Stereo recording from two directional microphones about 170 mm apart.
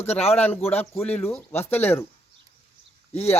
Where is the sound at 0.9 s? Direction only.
10° left (ahead or behind).